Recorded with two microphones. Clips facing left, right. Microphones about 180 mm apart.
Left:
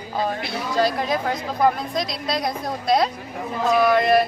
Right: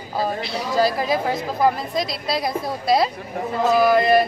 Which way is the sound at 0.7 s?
5° right (ahead or behind).